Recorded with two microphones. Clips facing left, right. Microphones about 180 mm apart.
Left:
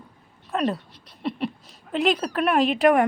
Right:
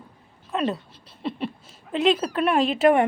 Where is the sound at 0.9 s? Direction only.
30° right (ahead or behind).